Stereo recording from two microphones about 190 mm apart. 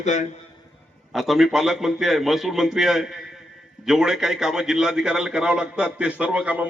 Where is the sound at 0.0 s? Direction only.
40° left (ahead or behind).